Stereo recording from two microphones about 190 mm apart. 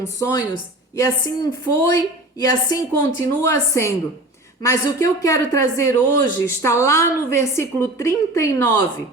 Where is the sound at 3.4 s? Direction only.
15° left (ahead or behind).